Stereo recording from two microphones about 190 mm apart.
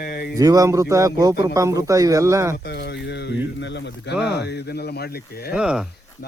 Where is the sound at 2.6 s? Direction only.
60° left (ahead or behind).